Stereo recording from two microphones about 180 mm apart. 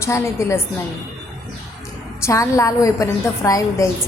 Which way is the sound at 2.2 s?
15° left (ahead or behind).